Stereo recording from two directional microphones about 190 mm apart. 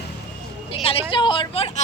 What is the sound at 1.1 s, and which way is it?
Speech, 25° left (ahead or behind).